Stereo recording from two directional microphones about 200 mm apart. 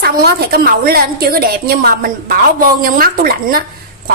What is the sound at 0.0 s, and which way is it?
A woman's voice, 50° right (ahead or behind).